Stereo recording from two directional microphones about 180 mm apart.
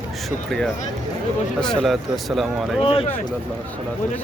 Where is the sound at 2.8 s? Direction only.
30° left (ahead or behind).